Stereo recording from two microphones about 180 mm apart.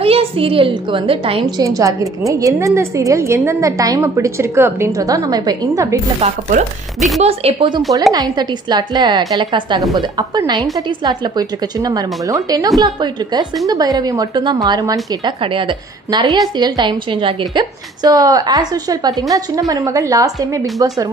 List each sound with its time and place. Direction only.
0.0 s a woman's voice: 30° right (ahead or behind)
1.6 s a woman's voice: 20° right (ahead or behind)
6.2 s a woman's voice: 40° right (ahead or behind); by 20.6 s 20° right (ahead or behind)